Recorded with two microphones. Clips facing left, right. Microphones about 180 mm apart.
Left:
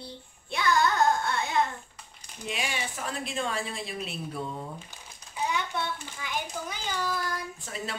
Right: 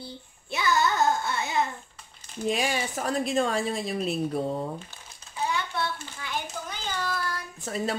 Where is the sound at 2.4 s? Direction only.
40° right (ahead or behind).